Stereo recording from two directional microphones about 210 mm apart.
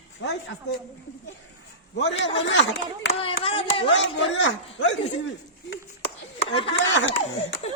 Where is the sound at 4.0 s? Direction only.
60° left (ahead or behind).